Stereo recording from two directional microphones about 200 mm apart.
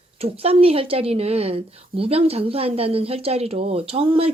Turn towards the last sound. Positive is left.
turn(degrees=-30)  # may be behind; listen again after turning